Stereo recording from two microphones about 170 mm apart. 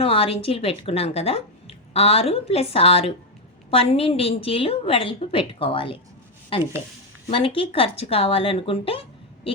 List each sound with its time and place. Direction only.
0.0 s a woman's voice: 35° left (ahead or behind)
7.3 s a woman's voice: 30° left (ahead or behind)